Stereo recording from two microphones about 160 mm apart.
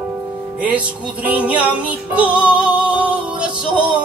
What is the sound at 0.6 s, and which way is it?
Music, 10° right (ahead or behind).